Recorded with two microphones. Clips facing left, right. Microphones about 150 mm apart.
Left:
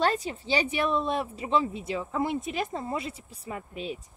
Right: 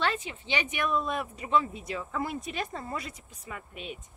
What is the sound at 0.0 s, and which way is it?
Speech, 40° left (ahead or behind).